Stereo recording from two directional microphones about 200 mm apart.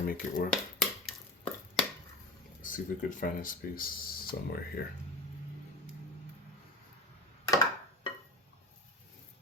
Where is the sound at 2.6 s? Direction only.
40° left (ahead or behind).